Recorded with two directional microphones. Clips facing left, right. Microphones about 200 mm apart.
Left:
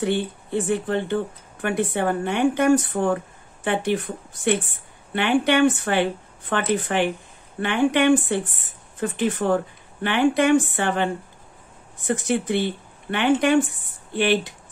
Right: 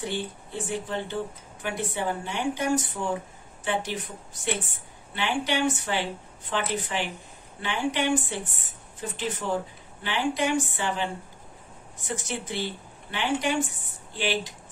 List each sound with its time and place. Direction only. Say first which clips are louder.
0.0 s speech: left 8 dB; 60° left (ahead or behind)